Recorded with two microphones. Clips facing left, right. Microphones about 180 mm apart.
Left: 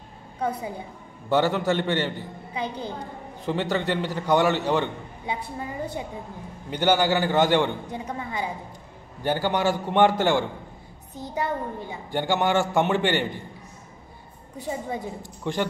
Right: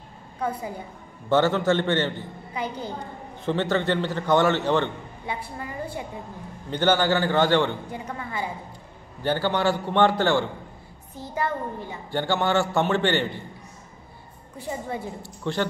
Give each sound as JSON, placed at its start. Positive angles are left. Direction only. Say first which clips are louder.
{"t": 1.3, "sound": "a child's voice", "louder": "right 2 dB", "side_deg": 15}
{"t": 6.7, "sound": "a child's voice", "louder": "even", "side_deg": 10}
{"t": 14.6, "sound": "a child's voice", "louder": "left 1 dB", "side_deg": 15}